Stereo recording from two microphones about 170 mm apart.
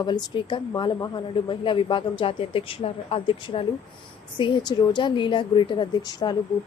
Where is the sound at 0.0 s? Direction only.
25° left (ahead or behind).